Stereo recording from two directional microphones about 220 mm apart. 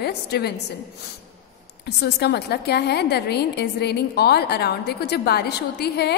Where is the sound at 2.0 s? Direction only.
50° left (ahead or behind).